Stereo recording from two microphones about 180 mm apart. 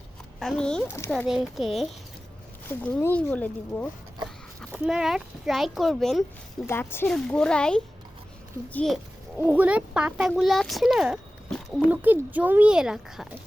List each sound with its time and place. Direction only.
0.3 s speech: centre (ahead or behind)
1.1 s speech: centre (ahead or behind)
4.7 s speech: 5° right (ahead or behind)
6.7 s speech: 10° left (ahead or behind)
9.5 s speech: 5° right (ahead or behind)
11.9 s a child's voice: 10° right (ahead or behind)